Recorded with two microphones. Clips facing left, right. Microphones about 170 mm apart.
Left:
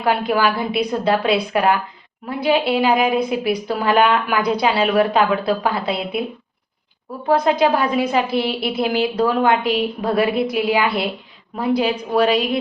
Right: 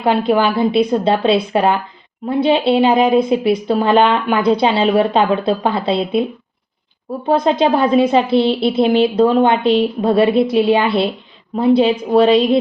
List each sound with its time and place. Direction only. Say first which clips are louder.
0.0 s a woman's voice: right 4 dB; 25° right (ahead or behind)
7.3 s a woman's voice: right 2 dB; 25° right (ahead or behind)